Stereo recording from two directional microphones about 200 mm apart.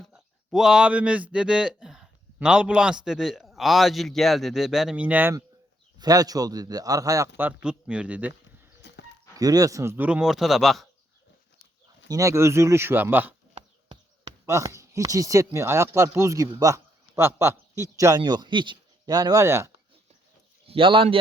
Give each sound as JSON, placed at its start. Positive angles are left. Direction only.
{"t": 0.0, "sound": "speech", "side_deg": 0}
{"t": 8.8, "sound": "a sound", "side_deg": 60}
{"t": 9.3, "sound": "speech", "side_deg": -20}
{"t": 12.0, "sound": "speech", "side_deg": -15}
{"t": 13.5, "sound": "a sound", "side_deg": -25}
{"t": 14.4, "sound": "speech", "side_deg": -15}
{"t": 20.7, "sound": "speech", "side_deg": -25}